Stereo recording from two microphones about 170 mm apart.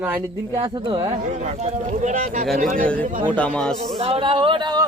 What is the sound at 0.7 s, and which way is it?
Speech, 30° right (ahead or behind).